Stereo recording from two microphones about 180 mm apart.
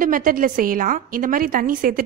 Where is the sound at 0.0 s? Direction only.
50° right (ahead or behind).